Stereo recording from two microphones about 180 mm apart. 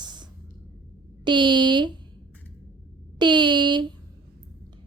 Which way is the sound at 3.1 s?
25° right (ahead or behind).